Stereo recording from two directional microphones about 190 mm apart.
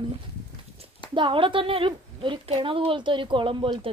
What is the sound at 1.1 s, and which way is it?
A woman's voice, 25° right (ahead or behind).